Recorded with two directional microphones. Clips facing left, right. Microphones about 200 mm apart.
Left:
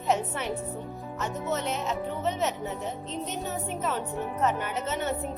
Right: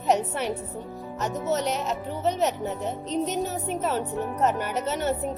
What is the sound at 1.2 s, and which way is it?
Speech, 40° right (ahead or behind).